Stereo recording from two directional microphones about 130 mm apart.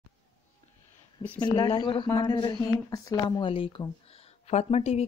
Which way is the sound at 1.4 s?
35° left (ahead or behind).